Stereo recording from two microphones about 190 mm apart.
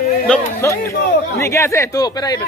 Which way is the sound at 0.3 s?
15° left (ahead or behind).